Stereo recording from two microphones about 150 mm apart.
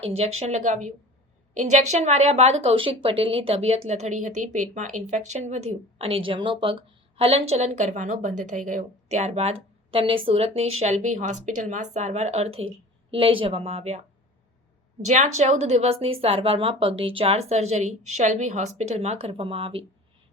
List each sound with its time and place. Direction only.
0.0 s a woman's voice: 45° right (ahead or behind)
15.0 s speech: 50° right (ahead or behind)